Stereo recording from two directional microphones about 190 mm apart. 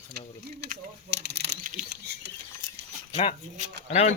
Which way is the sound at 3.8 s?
35° left (ahead or behind).